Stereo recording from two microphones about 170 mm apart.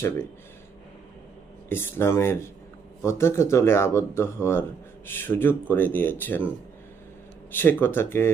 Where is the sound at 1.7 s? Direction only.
15° left (ahead or behind).